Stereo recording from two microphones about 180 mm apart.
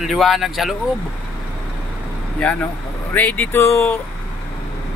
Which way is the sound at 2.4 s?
5° left (ahead or behind).